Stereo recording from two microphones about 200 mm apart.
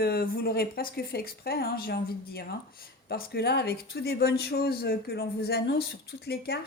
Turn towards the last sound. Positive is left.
turn(degrees=50)  # may be behind; listen again after turning